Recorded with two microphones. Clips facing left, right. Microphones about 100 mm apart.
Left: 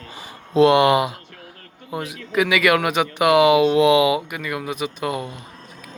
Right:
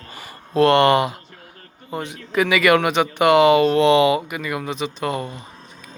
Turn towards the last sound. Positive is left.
turn(degrees=5)  # may be behind; listen again after turning